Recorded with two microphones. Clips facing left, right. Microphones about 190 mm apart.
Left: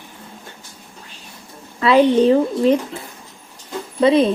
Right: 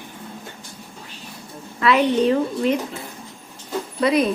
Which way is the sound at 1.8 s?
30° left (ahead or behind).